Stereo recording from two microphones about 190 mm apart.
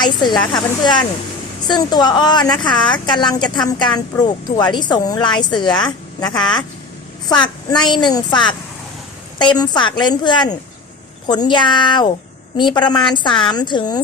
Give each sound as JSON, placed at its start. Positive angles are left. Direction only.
{"t": 0.0, "sound": "a woman's voice", "side_deg": 25}
{"t": 6.3, "sound": "speech", "side_deg": 5}
{"t": 7.4, "sound": "a woman's voice", "side_deg": 25}